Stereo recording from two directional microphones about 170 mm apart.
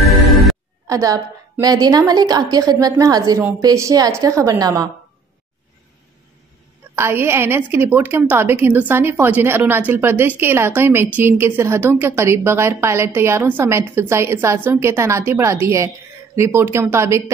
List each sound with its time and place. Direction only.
0.0 s music: centre (ahead or behind)
0.8 s a woman's voice: 20° right (ahead or behind)
7.0 s a woman's voice: 15° right (ahead or behind)